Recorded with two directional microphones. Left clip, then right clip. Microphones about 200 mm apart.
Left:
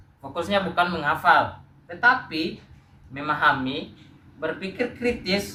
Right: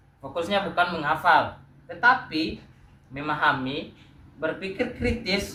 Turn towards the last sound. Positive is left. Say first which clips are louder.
# left 2 dB
turn(degrees=15)  # may be behind; listen again after turning